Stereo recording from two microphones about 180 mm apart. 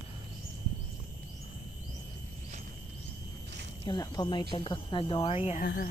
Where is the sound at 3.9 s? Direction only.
20° left (ahead or behind).